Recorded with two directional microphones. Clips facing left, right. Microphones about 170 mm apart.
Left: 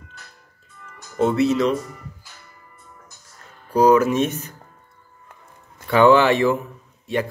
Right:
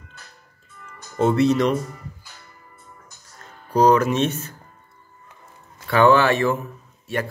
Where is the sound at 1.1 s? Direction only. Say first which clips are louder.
Right 1 dB; centre (ahead or behind).